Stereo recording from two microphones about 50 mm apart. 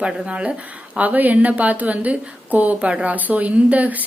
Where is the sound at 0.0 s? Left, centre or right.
Right.